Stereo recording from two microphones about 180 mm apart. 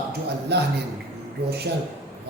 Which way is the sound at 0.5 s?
65° right (ahead or behind).